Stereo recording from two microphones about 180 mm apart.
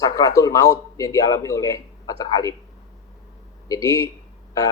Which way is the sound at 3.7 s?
15° left (ahead or behind).